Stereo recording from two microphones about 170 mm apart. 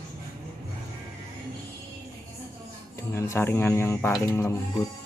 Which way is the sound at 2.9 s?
15° left (ahead or behind).